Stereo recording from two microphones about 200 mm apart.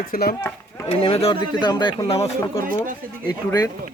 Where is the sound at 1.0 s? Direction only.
30° left (ahead or behind).